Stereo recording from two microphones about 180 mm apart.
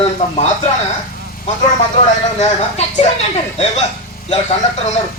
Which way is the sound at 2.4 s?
40° left (ahead or behind).